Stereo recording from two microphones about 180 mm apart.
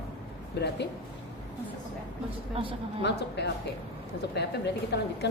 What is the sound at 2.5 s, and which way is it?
Speech, 30° right (ahead or behind).